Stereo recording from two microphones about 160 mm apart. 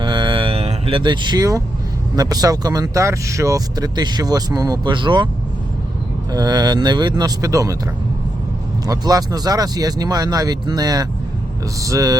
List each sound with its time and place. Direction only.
0.0 s cattle: 30° right (ahead or behind)
2.1 s speech: 25° right (ahead or behind)
6.3 s speech: 25° right (ahead or behind)
8.9 s speech: 25° right (ahead or behind)